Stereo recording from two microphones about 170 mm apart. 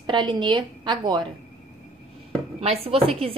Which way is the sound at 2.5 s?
35° right (ahead or behind).